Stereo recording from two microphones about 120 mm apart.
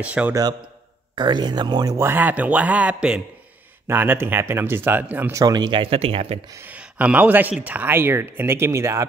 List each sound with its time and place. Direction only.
0.0 s speech: 10° right (ahead or behind)
0.3 s speech: 30° right (ahead or behind)
2.0 s speech: 20° right (ahead or behind)
5.3 s speech: 30° right (ahead or behind)
5.8 s speech: 50° right (ahead or behind)
6.5 s speech: 15° right (ahead or behind)